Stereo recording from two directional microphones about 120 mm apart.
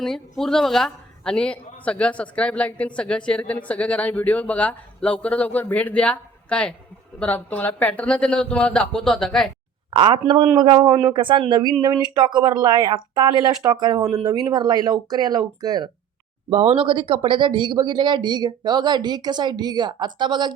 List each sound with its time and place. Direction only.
0.0 s speech: 5° left (ahead or behind)
9.9 s speech: 40° right (ahead or behind)
16.5 s speech: 55° right (ahead or behind); by 20.5 s 40° right (ahead or behind)